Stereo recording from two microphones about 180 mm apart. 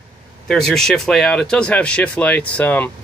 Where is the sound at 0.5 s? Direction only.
5° left (ahead or behind).